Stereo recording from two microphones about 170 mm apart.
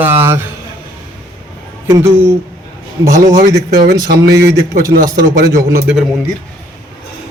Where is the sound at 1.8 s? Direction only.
15° right (ahead or behind).